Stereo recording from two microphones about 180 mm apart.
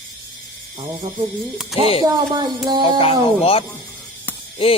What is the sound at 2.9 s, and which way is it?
Speech, 30° left (ahead or behind).